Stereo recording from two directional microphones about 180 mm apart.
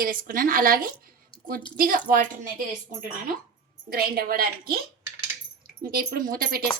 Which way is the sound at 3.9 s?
55° right (ahead or behind).